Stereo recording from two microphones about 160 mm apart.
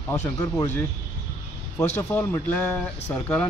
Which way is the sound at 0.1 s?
20° left (ahead or behind).